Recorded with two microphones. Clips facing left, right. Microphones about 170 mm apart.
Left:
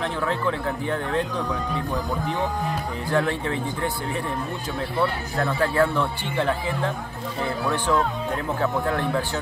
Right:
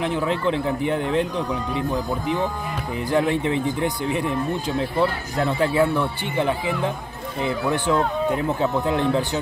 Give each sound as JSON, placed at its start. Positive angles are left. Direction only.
{"t": 0.0, "sound": "speech", "side_deg": -20}
{"t": 5.4, "sound": "speech", "side_deg": -15}